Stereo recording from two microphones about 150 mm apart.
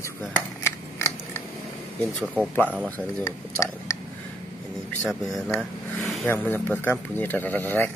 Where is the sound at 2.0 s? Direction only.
Centre (ahead or behind).